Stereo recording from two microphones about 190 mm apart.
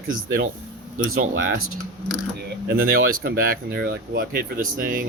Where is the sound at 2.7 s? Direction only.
55° right (ahead or behind).